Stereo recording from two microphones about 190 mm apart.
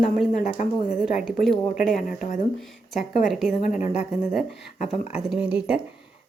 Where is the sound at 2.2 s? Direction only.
40° left (ahead or behind).